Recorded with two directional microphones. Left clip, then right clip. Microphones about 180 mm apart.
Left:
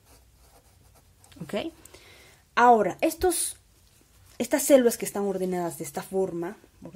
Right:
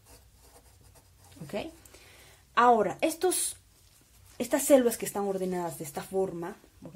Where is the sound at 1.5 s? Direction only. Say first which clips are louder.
Left 5 dB; 40° left (ahead or behind).